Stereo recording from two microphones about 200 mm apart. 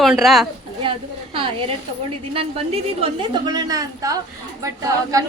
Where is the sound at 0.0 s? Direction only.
Centre (ahead or behind).